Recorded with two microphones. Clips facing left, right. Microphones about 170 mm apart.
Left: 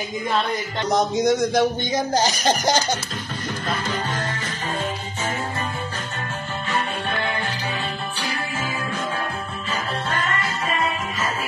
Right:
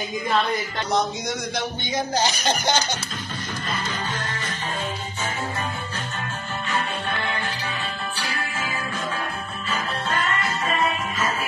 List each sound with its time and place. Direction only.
1.1 s speech: 45° left (ahead or behind)